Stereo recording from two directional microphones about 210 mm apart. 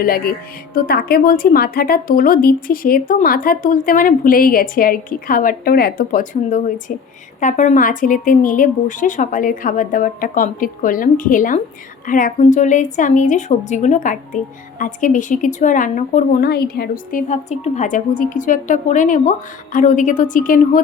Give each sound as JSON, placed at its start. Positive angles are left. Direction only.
{"t": 0.0, "sound": "a woman's voice", "side_deg": 45}